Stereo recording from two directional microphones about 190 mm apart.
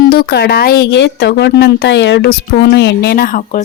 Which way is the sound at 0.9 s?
65° left (ahead or behind).